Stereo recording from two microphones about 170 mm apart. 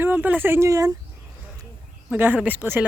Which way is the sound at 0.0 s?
10° right (ahead or behind).